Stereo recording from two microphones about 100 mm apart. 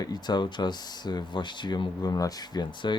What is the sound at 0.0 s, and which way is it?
Speech, 45° left (ahead or behind).